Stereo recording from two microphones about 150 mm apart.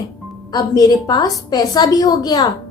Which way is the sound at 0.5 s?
25° left (ahead or behind).